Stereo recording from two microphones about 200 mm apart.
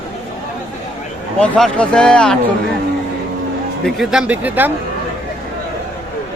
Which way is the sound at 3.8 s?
Centre (ahead or behind).